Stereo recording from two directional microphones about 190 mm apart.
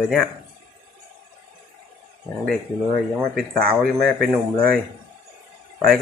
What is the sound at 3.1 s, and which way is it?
Speech, centre (ahead or behind).